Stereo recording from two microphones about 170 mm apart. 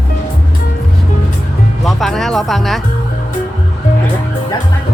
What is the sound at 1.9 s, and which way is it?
Speech, centre (ahead or behind).